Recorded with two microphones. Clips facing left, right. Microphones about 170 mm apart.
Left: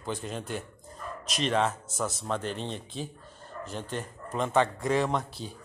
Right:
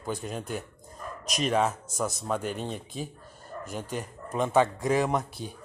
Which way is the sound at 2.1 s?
15° right (ahead or behind).